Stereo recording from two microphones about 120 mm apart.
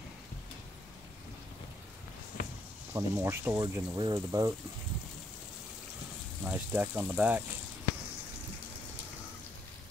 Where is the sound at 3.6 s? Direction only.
45° right (ahead or behind).